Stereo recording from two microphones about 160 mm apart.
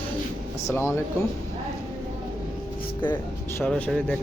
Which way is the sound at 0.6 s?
15° left (ahead or behind).